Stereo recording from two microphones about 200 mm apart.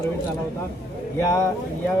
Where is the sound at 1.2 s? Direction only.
15° left (ahead or behind).